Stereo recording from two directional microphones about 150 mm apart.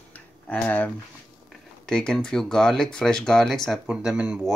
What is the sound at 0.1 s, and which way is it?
Tick-tock, 10° left (ahead or behind).